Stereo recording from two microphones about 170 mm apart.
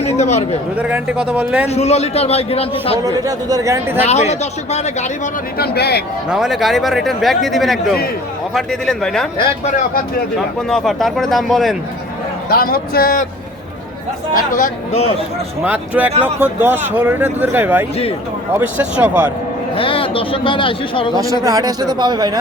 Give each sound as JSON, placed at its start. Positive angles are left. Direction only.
{"t": 0.0, "sound": "speech", "side_deg": 40}
{"t": 0.8, "sound": "speech", "side_deg": -10}
{"t": 1.6, "sound": "a man's voice", "side_deg": 40}
{"t": 3.0, "sound": "a man's voice", "side_deg": -20}
{"t": 4.0, "sound": "a man's voice", "side_deg": 40}
{"t": 5.5, "sound": "a man's voice", "side_deg": 70}
{"t": 6.3, "sound": "a man's voice", "side_deg": 0}
{"t": 10.3, "sound": "a man's voice", "side_deg": 5}
{"t": 12.5, "sound": "speech", "side_deg": 60}
{"t": 15.6, "sound": "speech", "side_deg": -10}
{"t": 19.7, "sound": "a man's voice", "side_deg": 30}
{"t": 21.4, "sound": "a man's voice", "side_deg": -20}